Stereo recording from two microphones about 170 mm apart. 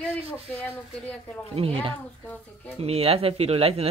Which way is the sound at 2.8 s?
35° right (ahead or behind).